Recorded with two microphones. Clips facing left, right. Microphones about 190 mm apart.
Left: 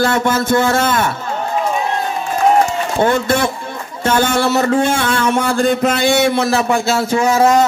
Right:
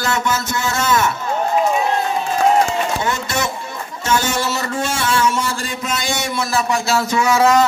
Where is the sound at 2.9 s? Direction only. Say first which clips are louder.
Left 7 dB; 55° left (ahead or behind).